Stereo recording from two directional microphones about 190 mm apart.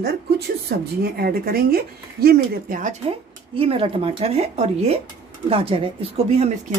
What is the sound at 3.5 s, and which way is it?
Speech, 30° right (ahead or behind).